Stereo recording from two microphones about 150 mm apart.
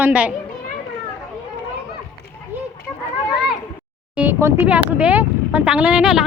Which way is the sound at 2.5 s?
10° right (ahead or behind).